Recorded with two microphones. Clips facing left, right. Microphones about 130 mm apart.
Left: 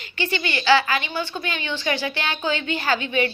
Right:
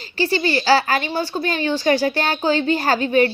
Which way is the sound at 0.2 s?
35° right (ahead or behind).